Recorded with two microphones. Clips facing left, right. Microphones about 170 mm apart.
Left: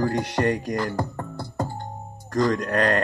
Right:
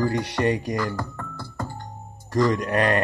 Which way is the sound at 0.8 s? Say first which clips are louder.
Left 1 dB; 25° left (ahead or behind).